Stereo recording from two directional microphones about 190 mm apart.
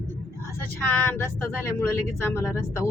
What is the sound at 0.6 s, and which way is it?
Speech, 10° left (ahead or behind).